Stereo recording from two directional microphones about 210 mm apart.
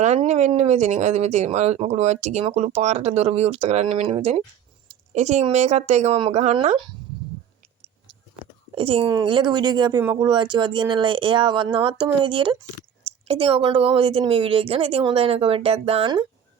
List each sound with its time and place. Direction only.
0.0 s speech: 35° right (ahead or behind)
8.7 s a woman's voice: 25° right (ahead or behind)
10.0 s speech: 10° right (ahead or behind)
10.2 s a woman's voice: 20° right (ahead or behind)